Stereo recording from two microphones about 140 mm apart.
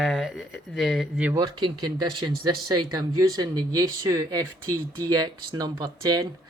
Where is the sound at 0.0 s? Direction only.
Centre (ahead or behind).